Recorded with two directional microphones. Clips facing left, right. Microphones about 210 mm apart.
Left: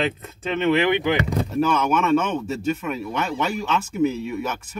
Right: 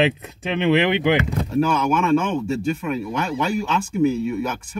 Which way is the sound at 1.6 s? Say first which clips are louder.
Right 2 dB; centre (ahead or behind).